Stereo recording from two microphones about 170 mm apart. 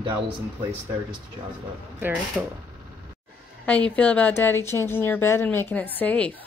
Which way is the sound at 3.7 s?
10° left (ahead or behind).